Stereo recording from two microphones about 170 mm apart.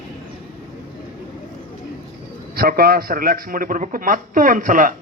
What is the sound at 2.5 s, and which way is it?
A man's voice, 60° right (ahead or behind).